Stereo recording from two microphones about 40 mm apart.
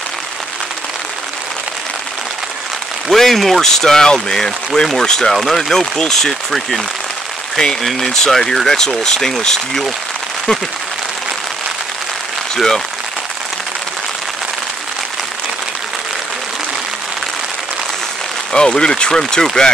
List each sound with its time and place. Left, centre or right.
3.1 s speech: centre
5.3 s speech: centre
7.8 s speech: centre
12.5 s speech: centre
18.5 s speech: left